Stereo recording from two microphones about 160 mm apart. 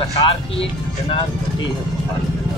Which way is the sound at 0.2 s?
35° left (ahead or behind).